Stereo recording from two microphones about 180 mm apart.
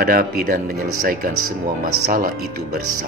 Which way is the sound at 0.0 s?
50° right (ahead or behind).